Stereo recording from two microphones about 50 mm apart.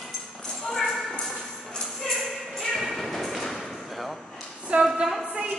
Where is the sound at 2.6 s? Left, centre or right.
Centre.